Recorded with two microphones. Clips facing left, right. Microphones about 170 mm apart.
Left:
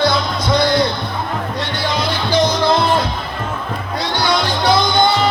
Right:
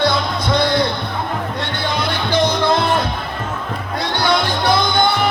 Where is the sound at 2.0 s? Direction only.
60° right (ahead or behind).